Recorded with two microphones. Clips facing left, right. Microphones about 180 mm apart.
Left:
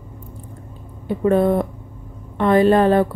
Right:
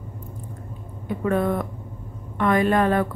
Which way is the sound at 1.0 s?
30° left (ahead or behind).